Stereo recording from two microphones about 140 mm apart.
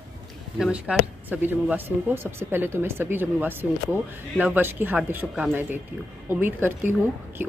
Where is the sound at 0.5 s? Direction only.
5° right (ahead or behind).